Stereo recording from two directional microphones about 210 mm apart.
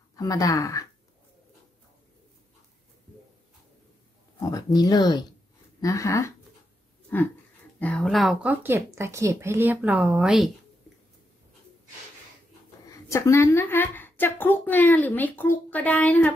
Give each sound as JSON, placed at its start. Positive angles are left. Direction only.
{"t": 0.1, "sound": "speech", "side_deg": 15}
{"t": 4.8, "sound": "a woman's voice", "side_deg": 20}
{"t": 12.8, "sound": "a woman's voice", "side_deg": 15}